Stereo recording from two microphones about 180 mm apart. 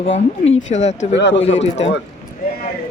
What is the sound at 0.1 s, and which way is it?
Speech, 35° left (ahead or behind).